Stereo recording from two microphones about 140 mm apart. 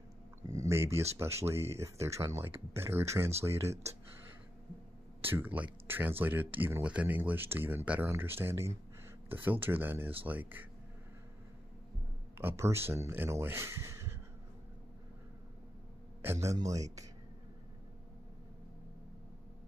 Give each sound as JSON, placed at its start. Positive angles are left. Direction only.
{"t": 0.5, "sound": "a sound", "side_deg": -20}
{"t": 1.1, "sound": "speech", "side_deg": -20}
{"t": 5.2, "sound": "speech", "side_deg": -15}
{"t": 12.4, "sound": "speech", "side_deg": -20}
{"t": 16.2, "sound": "speech", "side_deg": -20}